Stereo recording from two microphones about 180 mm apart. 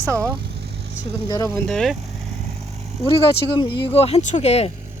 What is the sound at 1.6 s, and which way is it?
Speech, 5° left (ahead or behind).